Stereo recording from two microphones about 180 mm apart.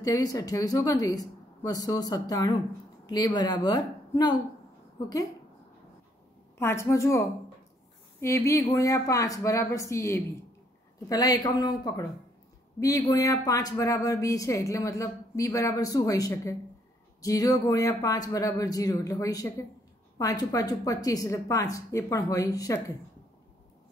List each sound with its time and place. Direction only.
0.0 s a woman's voice: 20° left (ahead or behind)
6.6 s a woman's voice: 15° left (ahead or behind)